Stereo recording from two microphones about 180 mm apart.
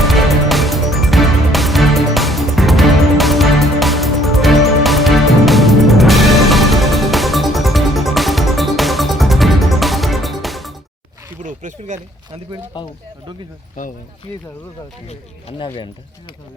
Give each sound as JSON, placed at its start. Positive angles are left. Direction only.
{"t": 0.0, "sound": "music", "side_deg": 0}
{"t": 11.4, "sound": "a sound", "side_deg": -45}
{"t": 12.7, "sound": "speech", "side_deg": 25}
{"t": 15.0, "sound": "speech", "side_deg": 35}